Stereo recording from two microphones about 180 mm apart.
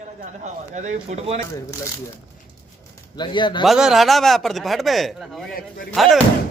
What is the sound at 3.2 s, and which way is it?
Speech, 25° left (ahead or behind).